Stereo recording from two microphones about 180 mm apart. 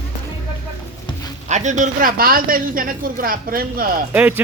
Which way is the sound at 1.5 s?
40° right (ahead or behind).